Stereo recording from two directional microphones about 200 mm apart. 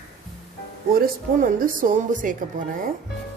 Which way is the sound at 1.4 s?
40° right (ahead or behind).